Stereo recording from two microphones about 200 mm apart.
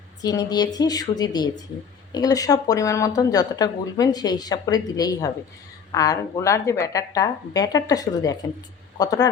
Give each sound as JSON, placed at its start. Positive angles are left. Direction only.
{"t": 0.2, "sound": "speech", "side_deg": 20}